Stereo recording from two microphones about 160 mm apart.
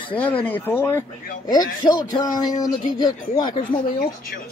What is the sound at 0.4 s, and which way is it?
A man's voice, 10° left (ahead or behind).